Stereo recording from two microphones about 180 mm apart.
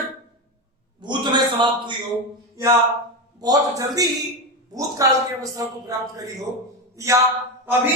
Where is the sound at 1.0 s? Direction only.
25° right (ahead or behind).